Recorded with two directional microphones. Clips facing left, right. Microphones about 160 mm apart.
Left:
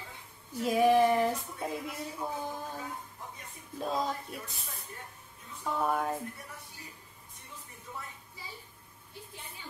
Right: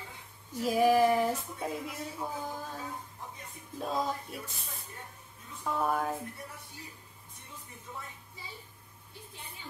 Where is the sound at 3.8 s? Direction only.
Centre (ahead or behind).